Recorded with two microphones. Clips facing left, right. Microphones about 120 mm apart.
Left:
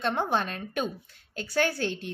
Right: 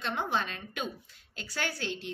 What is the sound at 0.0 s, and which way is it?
A woman's voice, 50° left (ahead or behind).